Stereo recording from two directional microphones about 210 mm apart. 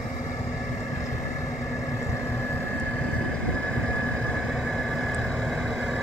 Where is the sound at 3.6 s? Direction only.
5° left (ahead or behind).